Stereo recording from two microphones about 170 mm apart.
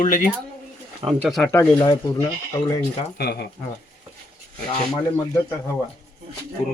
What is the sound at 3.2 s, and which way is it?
Speech, 70° left (ahead or behind).